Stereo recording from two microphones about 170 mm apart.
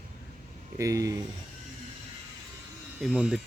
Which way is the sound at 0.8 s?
20° right (ahead or behind).